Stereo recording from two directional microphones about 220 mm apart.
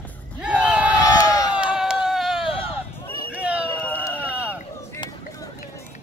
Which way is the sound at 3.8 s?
10° left (ahead or behind).